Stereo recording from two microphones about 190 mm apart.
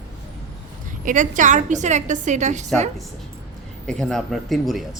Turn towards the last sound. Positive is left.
turn(degrees=0)  # may be behind; listen again after turning